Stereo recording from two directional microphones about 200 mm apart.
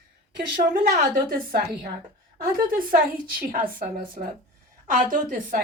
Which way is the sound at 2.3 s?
45° right (ahead or behind).